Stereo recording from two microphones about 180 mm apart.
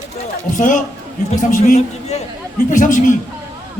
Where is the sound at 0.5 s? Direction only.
45° left (ahead or behind).